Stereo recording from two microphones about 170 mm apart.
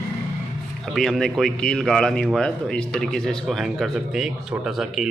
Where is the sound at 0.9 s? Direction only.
Centre (ahead or behind).